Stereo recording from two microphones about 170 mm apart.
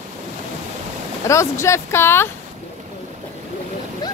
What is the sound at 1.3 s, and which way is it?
Speech, 15° left (ahead or behind).